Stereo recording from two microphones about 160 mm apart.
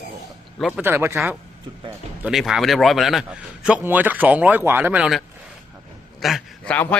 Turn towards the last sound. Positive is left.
turn(degrees=0)  # may be behind; listen again after turning